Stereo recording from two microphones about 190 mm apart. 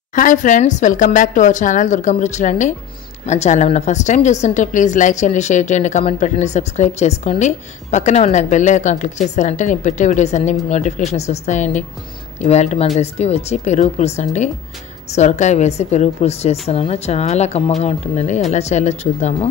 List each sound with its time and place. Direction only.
0.1 s a woman's voice: 45° left (ahead or behind)